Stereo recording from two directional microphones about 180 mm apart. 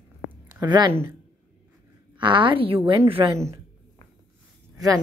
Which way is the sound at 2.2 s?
25° right (ahead or behind).